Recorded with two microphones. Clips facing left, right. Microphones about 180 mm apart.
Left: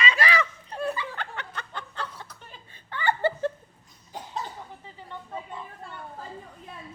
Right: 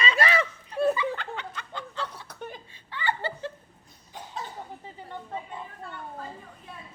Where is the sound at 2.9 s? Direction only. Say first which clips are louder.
Left 5 dB; 55° left (ahead or behind).